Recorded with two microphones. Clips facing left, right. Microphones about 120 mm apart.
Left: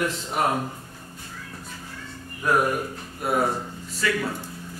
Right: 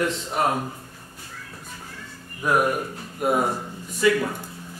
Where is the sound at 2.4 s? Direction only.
10° right (ahead or behind).